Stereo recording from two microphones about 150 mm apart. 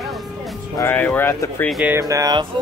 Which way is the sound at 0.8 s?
10° left (ahead or behind).